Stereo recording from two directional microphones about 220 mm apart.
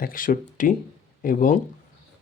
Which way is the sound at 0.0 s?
40° left (ahead or behind).